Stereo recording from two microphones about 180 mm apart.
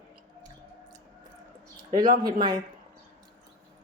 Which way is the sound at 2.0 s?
50° right (ahead or behind).